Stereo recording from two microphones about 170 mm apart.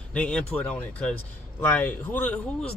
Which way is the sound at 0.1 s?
5° left (ahead or behind).